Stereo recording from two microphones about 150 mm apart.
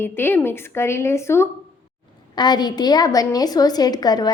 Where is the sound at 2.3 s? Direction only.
30° left (ahead or behind).